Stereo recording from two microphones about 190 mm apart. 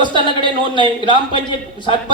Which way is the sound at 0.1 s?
25° right (ahead or behind).